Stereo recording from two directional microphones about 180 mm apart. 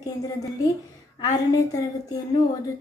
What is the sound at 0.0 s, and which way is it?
Speech, 20° left (ahead or behind).